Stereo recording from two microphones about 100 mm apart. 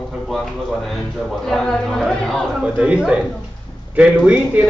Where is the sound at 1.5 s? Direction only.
5° left (ahead or behind).